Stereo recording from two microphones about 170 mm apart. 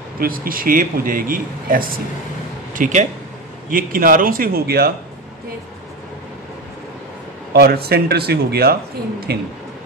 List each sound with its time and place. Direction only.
0.2 s a man's voice: 55° right (ahead or behind)
7.5 s speech: 65° right (ahead or behind)